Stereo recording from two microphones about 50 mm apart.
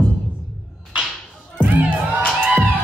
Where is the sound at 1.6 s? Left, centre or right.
Right.